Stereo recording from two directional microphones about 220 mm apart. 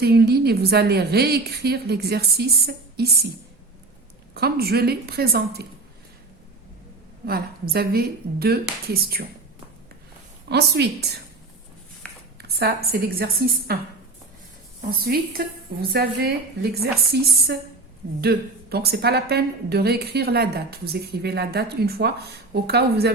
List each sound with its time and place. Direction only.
0.0 s a woman's voice: 45° right (ahead or behind)
4.4 s a woman's voice: 45° right (ahead or behind)
7.3 s a woman's voice: 45° right (ahead or behind)
10.5 s a woman's voice: 50° right (ahead or behind)
12.4 s a woman's voice: 45° right (ahead or behind)
15.0 s a woman's voice: 45° right (ahead or behind)